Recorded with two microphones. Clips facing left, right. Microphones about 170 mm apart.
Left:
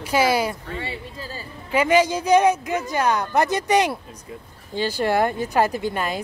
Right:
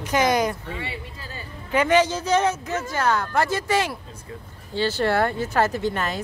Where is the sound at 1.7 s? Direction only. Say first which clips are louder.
Left 1 dB; 10° left (ahead or behind).